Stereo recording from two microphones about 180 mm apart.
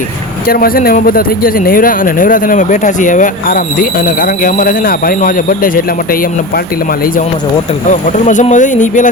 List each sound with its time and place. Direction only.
0.4 s speech: 55° left (ahead or behind)
7.9 s speech: 45° left (ahead or behind)